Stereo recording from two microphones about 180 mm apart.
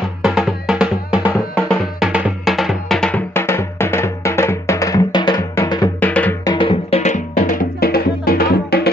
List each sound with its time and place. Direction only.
0.2 s music: 5° right (ahead or behind); by 5.9 s 20° left (ahead or behind)
5.9 s music: 10° left (ahead or behind)
6.4 s music: 25° left (ahead or behind); by 8.9 s 60° left (ahead or behind)